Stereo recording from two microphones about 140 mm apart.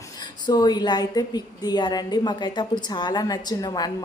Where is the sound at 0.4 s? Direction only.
30° left (ahead or behind).